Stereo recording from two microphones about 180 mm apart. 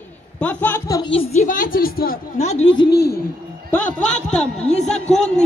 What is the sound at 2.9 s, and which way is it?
Speech, 65° left (ahead or behind).